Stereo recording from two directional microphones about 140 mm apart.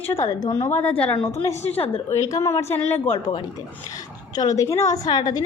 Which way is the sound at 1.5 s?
50° left (ahead or behind).